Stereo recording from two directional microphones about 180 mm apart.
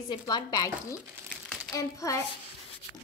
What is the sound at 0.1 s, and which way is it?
Speech, 20° left (ahead or behind).